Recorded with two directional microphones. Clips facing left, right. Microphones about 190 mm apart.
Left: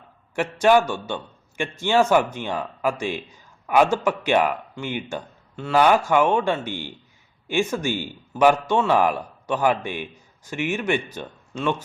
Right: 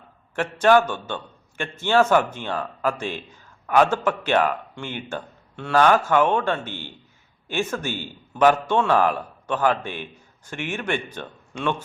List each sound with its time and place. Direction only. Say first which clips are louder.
0.3 s a man's voice: even; 10° left (ahead or behind)